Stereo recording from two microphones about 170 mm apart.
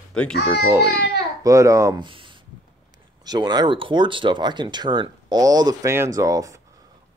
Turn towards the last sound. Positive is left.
turn(degrees=-20)  # may be behind; listen again after turning